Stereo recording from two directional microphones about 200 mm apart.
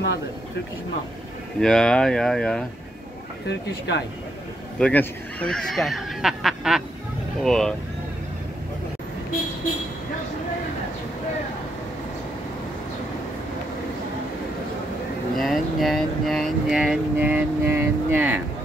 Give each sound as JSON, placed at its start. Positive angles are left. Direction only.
{"t": 1.6, "sound": "speech", "side_deg": 5}
{"t": 3.4, "sound": "speech", "side_deg": 60}
{"t": 4.7, "sound": "speech", "side_deg": 5}
{"t": 15.3, "sound": "speech", "side_deg": 0}